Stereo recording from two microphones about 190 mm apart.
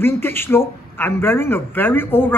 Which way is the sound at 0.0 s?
10° left (ahead or behind).